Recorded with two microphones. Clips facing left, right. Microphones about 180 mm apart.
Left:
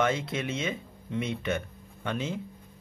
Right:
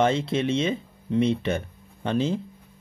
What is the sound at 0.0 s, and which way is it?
Speech, 30° right (ahead or behind).